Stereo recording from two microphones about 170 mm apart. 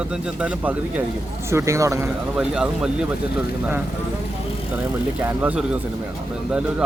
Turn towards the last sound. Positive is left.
turn(degrees=-5)  # may be behind; listen again after turning